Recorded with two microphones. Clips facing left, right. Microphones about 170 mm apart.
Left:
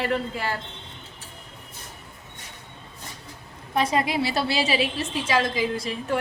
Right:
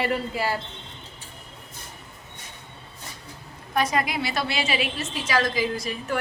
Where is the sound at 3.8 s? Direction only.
25° left (ahead or behind).